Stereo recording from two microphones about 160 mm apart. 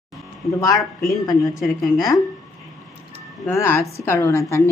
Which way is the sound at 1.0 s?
25° left (ahead or behind).